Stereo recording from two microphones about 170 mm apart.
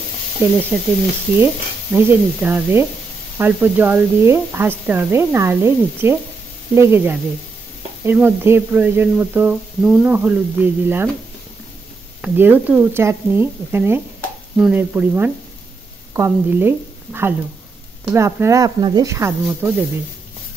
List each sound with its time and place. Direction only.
0.4 s speech: 15° right (ahead or behind)
12.2 s a woman's voice: 10° right (ahead or behind)
19.4 s speech: 5° right (ahead or behind)